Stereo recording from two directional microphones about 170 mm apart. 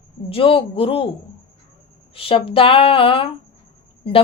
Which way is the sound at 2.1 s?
35° left (ahead or behind).